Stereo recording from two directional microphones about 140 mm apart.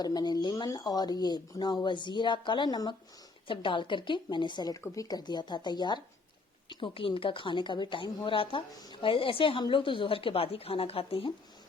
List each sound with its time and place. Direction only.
0.0 s a woman's voice: 30° left (ahead or behind)